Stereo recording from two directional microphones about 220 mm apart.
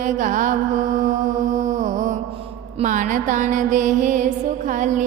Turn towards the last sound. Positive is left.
turn(degrees=-35)  # may be behind; listen again after turning